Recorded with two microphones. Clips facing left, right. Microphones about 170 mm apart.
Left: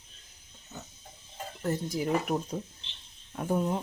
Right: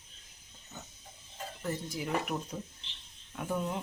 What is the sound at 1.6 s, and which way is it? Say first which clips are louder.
Speech: left 6 dB; 40° left (ahead or behind).